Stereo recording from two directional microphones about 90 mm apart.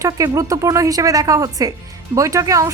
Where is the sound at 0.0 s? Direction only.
40° right (ahead or behind).